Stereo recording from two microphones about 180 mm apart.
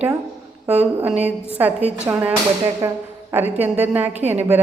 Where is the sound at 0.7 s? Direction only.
10° right (ahead or behind).